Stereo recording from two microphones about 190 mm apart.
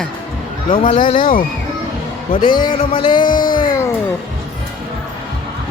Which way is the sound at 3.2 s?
45° left (ahead or behind).